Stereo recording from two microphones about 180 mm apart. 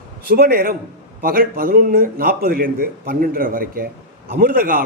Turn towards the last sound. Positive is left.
turn(degrees=-55)  # may be behind; listen again after turning